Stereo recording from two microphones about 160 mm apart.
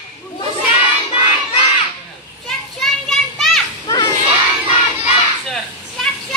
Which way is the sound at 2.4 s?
Centre (ahead or behind).